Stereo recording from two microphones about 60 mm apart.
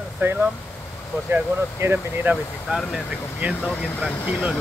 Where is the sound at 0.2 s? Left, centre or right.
Right.